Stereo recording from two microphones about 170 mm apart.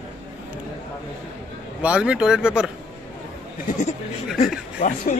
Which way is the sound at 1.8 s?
5° right (ahead or behind).